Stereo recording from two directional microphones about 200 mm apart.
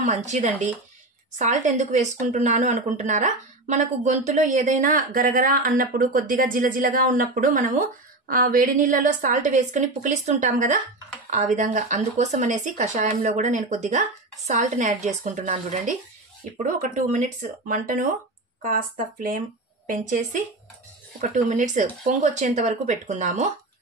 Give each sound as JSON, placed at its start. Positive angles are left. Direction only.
{"t": 0.0, "sound": "speech", "side_deg": -35}